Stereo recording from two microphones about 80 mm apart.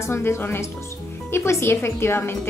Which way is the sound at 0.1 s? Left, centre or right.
Left.